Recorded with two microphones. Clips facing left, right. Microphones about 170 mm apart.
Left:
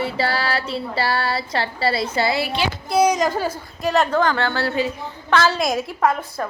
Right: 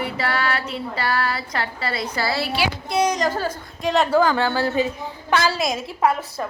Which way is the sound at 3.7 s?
Centre (ahead or behind).